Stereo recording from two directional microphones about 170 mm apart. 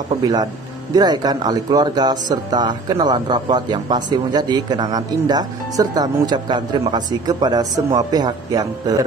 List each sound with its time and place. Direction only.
0.2 s speech: 25° right (ahead or behind)